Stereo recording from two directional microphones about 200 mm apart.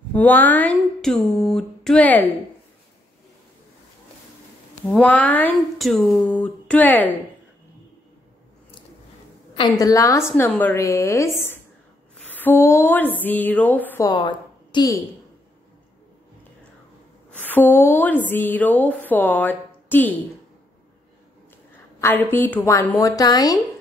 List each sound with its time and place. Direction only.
0.1 s speech: 10° left (ahead or behind)
4.8 s speech: 5° left (ahead or behind)
9.6 s speech: 20° left (ahead or behind)
14.1 s a woman's voice: 20° left (ahead or behind)
17.4 s a woman's voice: 10° left (ahead or behind)
22.0 s speech: 10° left (ahead or behind)